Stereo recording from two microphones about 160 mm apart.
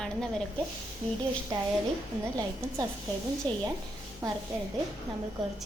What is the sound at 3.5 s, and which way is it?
Speech, 10° left (ahead or behind).